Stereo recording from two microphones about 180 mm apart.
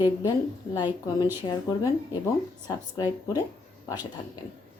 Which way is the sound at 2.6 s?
20° left (ahead or behind).